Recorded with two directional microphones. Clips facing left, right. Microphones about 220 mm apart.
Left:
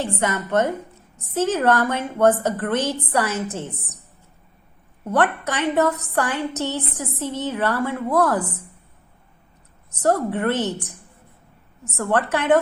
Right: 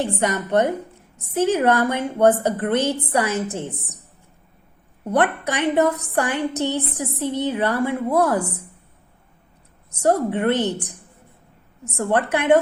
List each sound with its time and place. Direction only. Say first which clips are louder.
0.0 s a woman's voice: right 2 dB; 15° right (ahead or behind)
5.1 s a woman's voice: right 1 dB; 15° right (ahead or behind)
10.2 s a woman's voice: right 2 dB; 15° right (ahead or behind)
11.9 s a woman's voice: right 1 dB; 15° right (ahead or behind)